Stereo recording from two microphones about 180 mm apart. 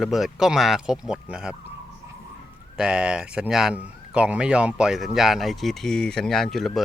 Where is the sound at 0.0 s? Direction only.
Centre (ahead or behind).